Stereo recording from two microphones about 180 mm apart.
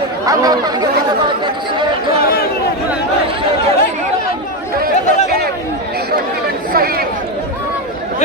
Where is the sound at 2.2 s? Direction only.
55° left (ahead or behind).